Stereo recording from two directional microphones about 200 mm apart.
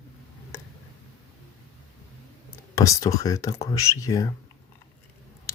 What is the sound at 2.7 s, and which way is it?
Speech, 15° left (ahead or behind).